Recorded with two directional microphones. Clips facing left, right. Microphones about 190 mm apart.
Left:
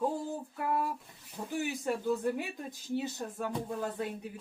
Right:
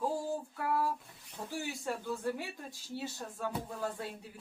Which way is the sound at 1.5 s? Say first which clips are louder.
Left 5 dB; 20° left (ahead or behind).